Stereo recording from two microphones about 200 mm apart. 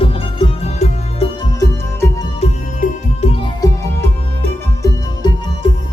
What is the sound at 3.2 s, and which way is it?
Music, 30° left (ahead or behind).